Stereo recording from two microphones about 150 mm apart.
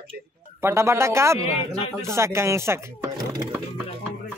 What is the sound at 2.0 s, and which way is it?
Chopping, 20° right (ahead or behind).